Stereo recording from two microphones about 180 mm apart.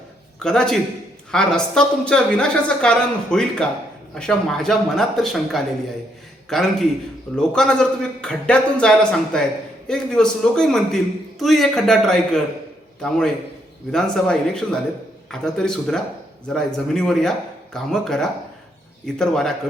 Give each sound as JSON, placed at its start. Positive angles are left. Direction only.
{"t": 0.3, "sound": "a man's voice", "side_deg": 5}